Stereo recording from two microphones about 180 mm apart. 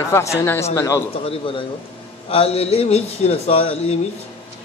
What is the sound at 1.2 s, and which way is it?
A man's voice, 30° left (ahead or behind).